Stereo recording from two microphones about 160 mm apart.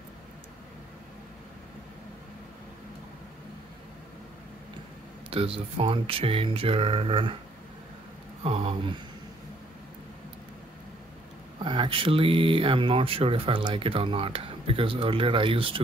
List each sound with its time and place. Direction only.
5.3 s speech: 35° right (ahead or behind)
8.5 s a sound: 35° right (ahead or behind)
11.6 s speech: 30° right (ahead or behind)